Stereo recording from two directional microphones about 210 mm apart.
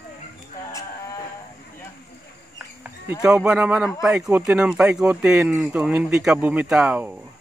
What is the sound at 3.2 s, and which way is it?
Speech, 5° right (ahead or behind).